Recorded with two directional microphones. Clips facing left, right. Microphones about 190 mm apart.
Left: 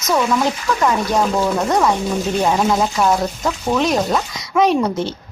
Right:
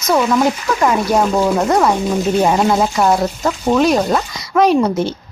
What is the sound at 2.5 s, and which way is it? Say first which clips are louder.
A woman's voice: right 2 dB; 5° right (ahead or behind).